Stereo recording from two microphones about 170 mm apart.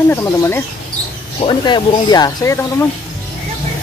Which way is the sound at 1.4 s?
25° left (ahead or behind).